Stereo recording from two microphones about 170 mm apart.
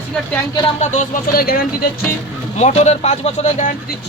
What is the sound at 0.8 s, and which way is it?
Speech, 45° left (ahead or behind).